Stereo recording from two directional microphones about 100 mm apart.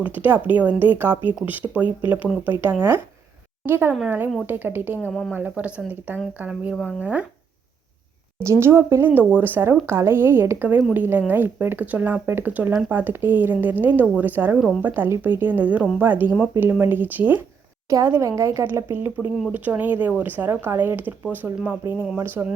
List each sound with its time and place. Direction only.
0.0 s a woman's voice: 20° right (ahead or behind)
8.4 s a woman's voice: 25° right (ahead or behind)
17.8 s a woman's voice: 30° right (ahead or behind)